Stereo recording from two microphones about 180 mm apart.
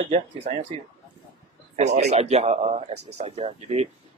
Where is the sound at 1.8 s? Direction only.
40° right (ahead or behind).